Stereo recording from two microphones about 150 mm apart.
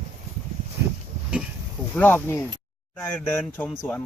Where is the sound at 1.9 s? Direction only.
15° left (ahead or behind).